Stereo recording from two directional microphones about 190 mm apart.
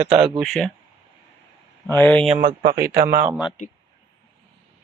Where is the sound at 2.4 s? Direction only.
50° right (ahead or behind).